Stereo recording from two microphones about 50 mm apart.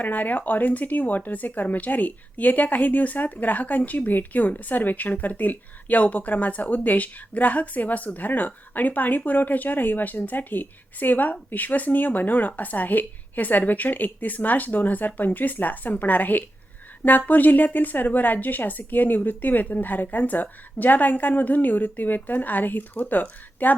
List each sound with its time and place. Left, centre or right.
0.0 s speech: left